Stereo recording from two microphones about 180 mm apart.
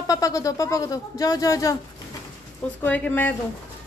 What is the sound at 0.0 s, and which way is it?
Speech, 20° left (ahead or behind).